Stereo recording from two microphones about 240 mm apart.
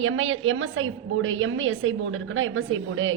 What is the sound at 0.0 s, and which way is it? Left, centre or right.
A woman's voice, right.